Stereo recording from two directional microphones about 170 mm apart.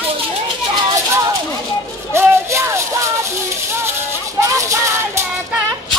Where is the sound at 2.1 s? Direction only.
15° right (ahead or behind).